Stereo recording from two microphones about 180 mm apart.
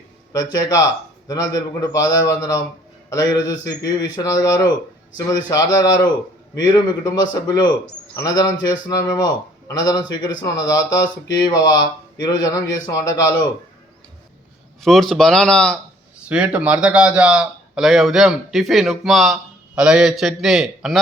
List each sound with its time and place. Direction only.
1.5 s a man's voice: 20° left (ahead or behind)
14.8 s a man's voice: centre (ahead or behind)
16.3 s a man's voice: 5° right (ahead or behind)